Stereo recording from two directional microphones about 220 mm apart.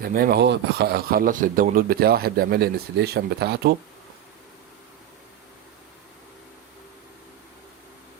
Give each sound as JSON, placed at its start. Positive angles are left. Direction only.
{"t": 0.0, "sound": "speech", "side_deg": -45}